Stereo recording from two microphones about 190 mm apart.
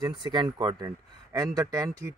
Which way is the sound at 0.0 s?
25° right (ahead or behind).